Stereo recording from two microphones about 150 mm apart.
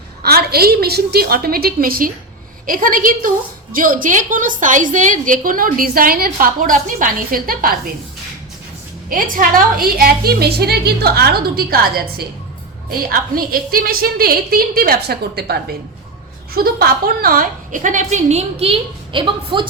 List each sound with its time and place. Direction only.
0.2 s a woman's voice: 90° right; by 7.8 s 75° right (ahead or behind)
9.0 s a woman's voice: 65° right (ahead or behind); by 12.2 s 90° right
13.0 s a woman's voice: 75° right (ahead or behind); by 15.5 s 90° right
16.7 s a woman's voice: 85° right; by 19.6 s 35° right (ahead or behind)